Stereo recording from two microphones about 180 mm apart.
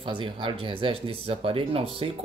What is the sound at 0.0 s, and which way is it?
Speech, 25° right (ahead or behind).